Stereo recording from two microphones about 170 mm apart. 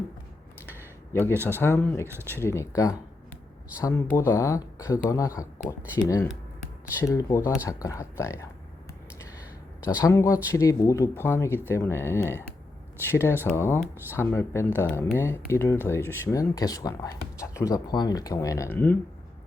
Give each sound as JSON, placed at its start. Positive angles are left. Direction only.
{"t": 1.3, "sound": "a man's voice", "side_deg": -15}
{"t": 1.5, "sound": "speech", "side_deg": 15}
{"t": 2.0, "sound": "a man's voice", "side_deg": -15}
{"t": 2.3, "sound": "speech", "side_deg": 15}
{"t": 9.8, "sound": "speech", "side_deg": 15}